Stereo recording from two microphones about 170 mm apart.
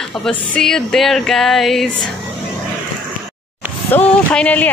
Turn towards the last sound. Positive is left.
turn(degrees=10)  # may be behind; listen again after turning